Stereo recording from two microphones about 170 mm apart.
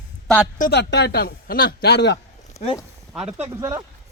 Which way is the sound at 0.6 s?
75° left (ahead or behind).